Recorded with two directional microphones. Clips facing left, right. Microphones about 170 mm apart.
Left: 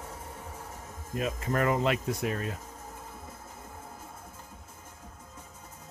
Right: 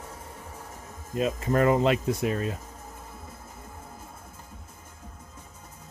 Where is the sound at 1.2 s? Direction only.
25° right (ahead or behind).